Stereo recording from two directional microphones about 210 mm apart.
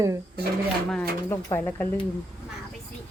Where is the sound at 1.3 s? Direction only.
10° left (ahead or behind).